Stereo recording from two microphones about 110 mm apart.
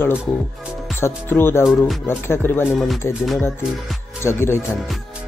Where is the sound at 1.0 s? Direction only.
20° left (ahead or behind).